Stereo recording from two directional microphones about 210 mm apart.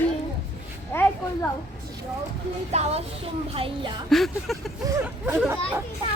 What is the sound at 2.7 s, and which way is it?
Music, 30° right (ahead or behind).